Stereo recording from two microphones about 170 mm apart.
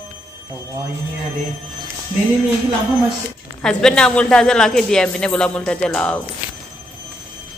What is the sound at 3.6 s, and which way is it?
Speech, 5° left (ahead or behind).